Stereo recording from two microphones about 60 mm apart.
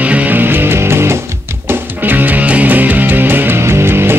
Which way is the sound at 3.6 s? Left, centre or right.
Right.